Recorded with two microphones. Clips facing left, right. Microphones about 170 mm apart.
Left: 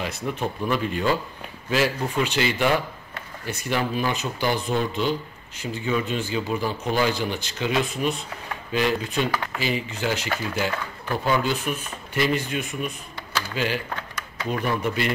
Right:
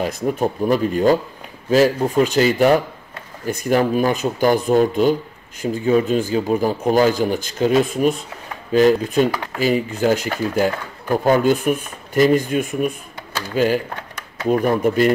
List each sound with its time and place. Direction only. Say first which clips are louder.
0.0 s speech: right 8 dB; 45° right (ahead or behind)
14.4 s speech: right 9 dB; 45° right (ahead or behind)